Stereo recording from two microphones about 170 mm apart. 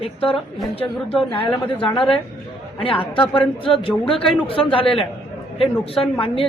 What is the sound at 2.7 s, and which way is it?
A man's voice, 30° left (ahead or behind).